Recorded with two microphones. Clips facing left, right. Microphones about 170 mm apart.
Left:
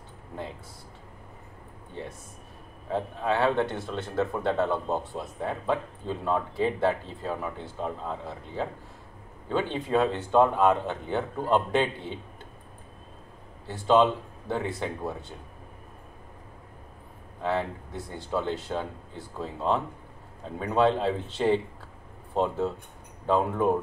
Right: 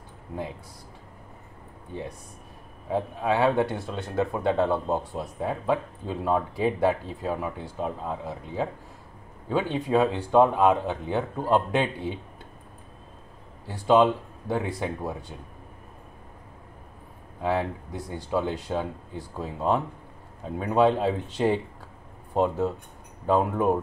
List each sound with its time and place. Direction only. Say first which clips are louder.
1.9 s speech: right 3 dB; 10° right (ahead or behind)
13.7 s speech: right 2 dB; 15° right (ahead or behind)
17.4 s speech: right 2 dB; 15° right (ahead or behind)